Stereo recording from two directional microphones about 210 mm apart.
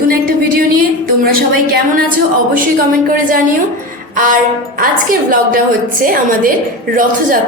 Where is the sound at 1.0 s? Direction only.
45° right (ahead or behind).